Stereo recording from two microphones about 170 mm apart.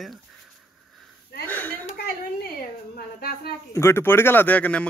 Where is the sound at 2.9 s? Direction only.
60° left (ahead or behind).